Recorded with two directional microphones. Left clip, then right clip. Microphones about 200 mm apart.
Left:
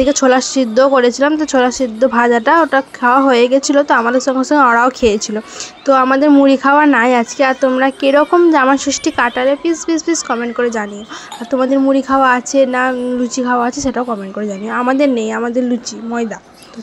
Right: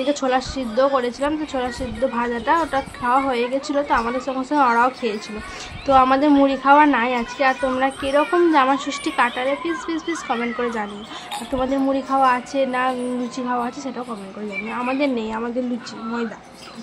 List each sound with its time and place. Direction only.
0.0 s speech: 35° left (ahead or behind)
5.9 s a woman's voice: 25° left (ahead or behind)